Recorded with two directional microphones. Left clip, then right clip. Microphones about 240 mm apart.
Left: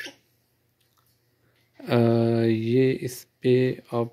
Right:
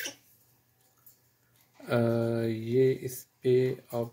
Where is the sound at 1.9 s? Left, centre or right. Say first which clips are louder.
Left 6 dB; left.